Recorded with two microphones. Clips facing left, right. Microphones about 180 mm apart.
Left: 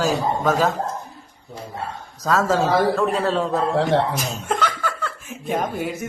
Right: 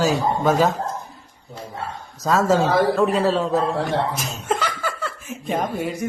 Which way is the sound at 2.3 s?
5° right (ahead or behind).